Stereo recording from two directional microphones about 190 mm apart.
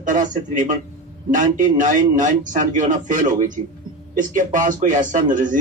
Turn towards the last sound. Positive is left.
turn(degrees=-40)  # may be behind; listen again after turning